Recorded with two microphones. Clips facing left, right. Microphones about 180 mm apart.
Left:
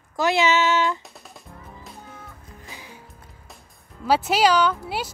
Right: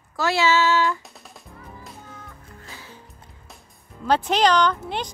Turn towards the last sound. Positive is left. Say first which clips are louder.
# even
turn(degrees=5)  # may be behind; listen again after turning